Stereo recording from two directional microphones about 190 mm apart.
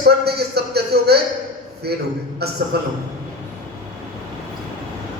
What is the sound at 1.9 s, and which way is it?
Speech, 55° right (ahead or behind).